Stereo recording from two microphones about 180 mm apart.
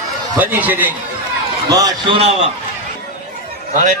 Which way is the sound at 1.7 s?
20° right (ahead or behind).